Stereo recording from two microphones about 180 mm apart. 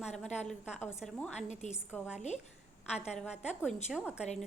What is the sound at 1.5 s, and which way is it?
Speech, 40° left (ahead or behind).